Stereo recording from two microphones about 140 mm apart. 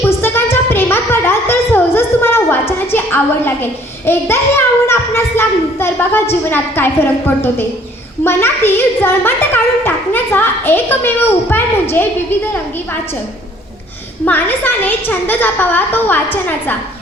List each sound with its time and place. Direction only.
0.0 s a sound: 15° left (ahead or behind)
6.4 s speech: 15° left (ahead or behind)
14.3 s speech: 15° left (ahead or behind)